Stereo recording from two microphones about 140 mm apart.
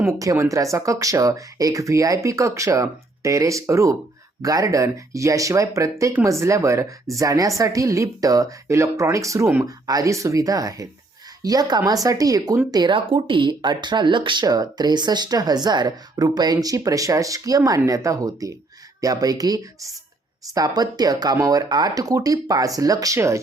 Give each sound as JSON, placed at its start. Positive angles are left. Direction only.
{"t": 0.1, "sound": "speech", "side_deg": -20}